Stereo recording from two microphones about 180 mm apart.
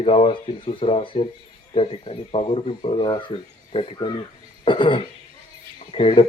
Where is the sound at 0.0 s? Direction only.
30° left (ahead or behind).